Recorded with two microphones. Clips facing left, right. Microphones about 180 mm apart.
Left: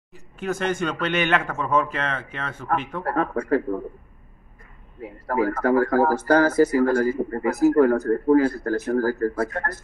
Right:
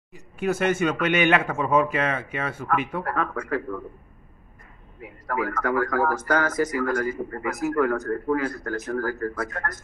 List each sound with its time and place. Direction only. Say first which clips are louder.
0.1 s speech: right 2 dB; 10° right (ahead or behind)
3.1 s speech: left 10 dB; 30° left (ahead or behind)
5.0 s speech: left 5 dB; 35° left (ahead or behind)